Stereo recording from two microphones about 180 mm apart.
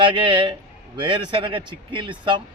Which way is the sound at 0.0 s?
25° right (ahead or behind).